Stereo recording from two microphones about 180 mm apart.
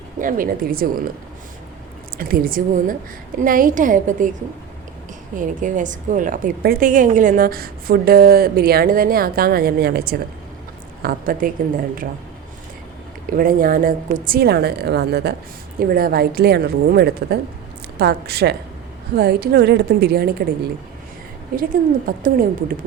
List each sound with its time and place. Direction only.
0.2 s a woman's voice: 50° right (ahead or behind)
2.1 s a woman's voice: 55° right (ahead or behind)
5.4 s a woman's voice: 45° right (ahead or behind)
13.3 s a woman's voice: 50° right (ahead or behind)
21.5 s a woman's voice: 50° right (ahead or behind)